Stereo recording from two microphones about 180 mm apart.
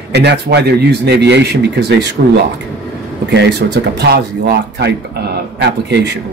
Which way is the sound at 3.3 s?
70° right (ahead or behind).